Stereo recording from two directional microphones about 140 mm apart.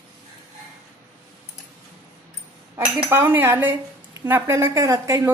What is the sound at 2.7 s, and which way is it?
A woman's voice, 15° right (ahead or behind).